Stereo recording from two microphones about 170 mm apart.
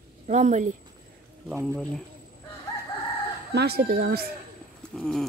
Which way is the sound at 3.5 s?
70° right (ahead or behind).